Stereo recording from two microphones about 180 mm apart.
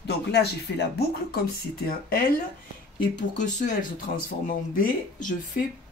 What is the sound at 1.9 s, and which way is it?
Speech, 55° left (ahead or behind).